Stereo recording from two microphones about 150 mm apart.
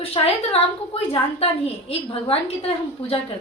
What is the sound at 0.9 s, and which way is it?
A woman's voice, 40° left (ahead or behind).